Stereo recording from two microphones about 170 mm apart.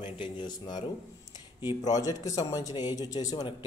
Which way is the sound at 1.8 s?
20° left (ahead or behind).